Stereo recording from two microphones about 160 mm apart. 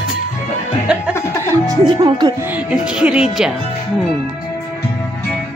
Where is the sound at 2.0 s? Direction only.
25° right (ahead or behind).